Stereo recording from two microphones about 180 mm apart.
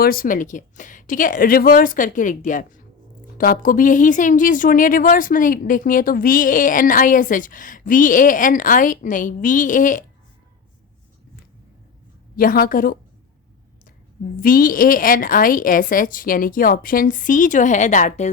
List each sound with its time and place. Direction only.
0.0 s speech: 55° left (ahead or behind)
12.4 s speech: 55° left (ahead or behind)
14.4 s speech: 50° left (ahead or behind)